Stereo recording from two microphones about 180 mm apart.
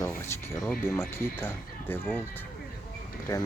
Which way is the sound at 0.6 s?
10° left (ahead or behind).